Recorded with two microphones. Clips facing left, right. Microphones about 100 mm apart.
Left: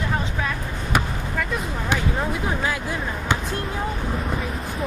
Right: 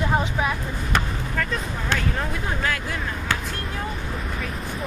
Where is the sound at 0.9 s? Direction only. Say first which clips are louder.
Left 2 dB; 10° left (ahead or behind).